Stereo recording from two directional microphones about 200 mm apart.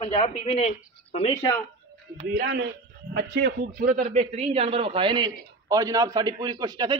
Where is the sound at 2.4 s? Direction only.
55° right (ahead or behind).